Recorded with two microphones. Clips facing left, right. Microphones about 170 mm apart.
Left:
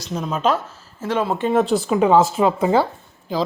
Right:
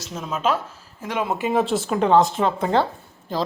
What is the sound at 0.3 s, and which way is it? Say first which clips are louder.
A woman's voice: left 2 dB; 5° right (ahead or behind).